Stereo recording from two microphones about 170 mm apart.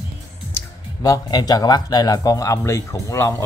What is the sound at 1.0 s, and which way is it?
A man's voice, 20° left (ahead or behind).